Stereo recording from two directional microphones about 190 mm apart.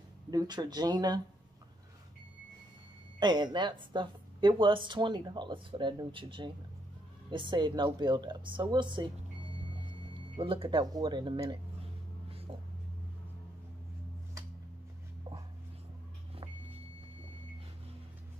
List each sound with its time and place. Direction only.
0.3 s speech: 20° right (ahead or behind)
3.2 s speech: 25° right (ahead or behind)
10.3 s speech: 25° right (ahead or behind)